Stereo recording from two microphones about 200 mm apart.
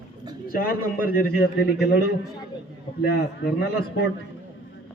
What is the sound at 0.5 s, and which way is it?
A man's voice, 45° left (ahead or behind).